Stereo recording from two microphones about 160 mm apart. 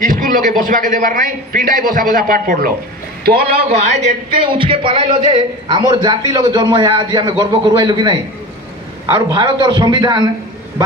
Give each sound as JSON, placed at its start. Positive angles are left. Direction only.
{"t": 0.0, "sound": "a man's voice", "side_deg": -60}
{"t": 3.8, "sound": "a man's voice", "side_deg": -45}